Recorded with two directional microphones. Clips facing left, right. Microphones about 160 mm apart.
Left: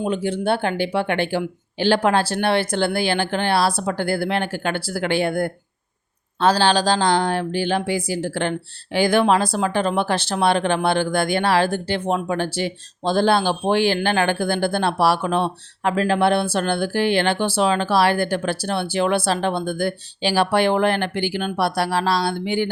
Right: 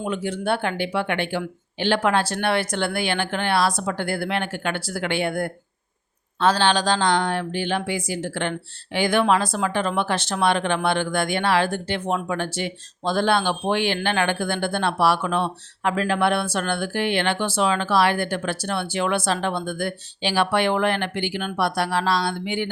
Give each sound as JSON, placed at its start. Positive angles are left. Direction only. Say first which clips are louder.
{"t": 0.0, "sound": "speech", "louder": "left 4 dB", "side_deg": 30}